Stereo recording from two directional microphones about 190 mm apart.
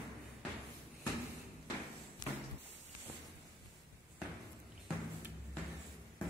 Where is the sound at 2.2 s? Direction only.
20° left (ahead or behind).